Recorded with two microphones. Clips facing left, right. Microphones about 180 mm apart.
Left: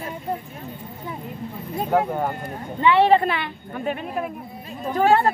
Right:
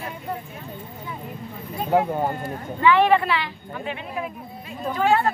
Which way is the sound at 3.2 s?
50° left (ahead or behind).